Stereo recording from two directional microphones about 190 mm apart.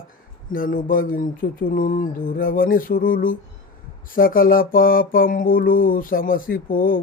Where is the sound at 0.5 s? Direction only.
45° left (ahead or behind).